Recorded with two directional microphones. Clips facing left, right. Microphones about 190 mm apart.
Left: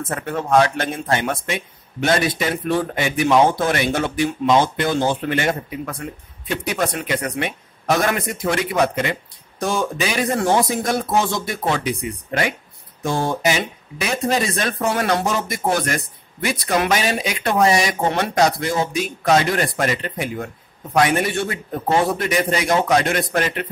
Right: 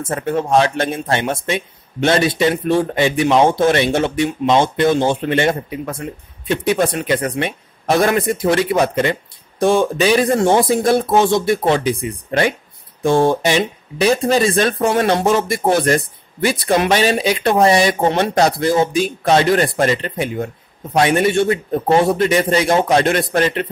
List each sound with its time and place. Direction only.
0.1 s speech: 25° right (ahead or behind)